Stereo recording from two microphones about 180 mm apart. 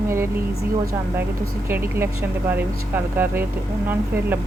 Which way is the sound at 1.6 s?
15° right (ahead or behind).